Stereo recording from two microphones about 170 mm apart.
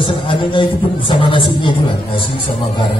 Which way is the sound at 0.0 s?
30° left (ahead or behind).